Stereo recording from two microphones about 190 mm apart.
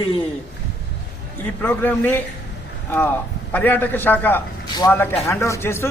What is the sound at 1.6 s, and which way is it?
A man's voice, 10° left (ahead or behind).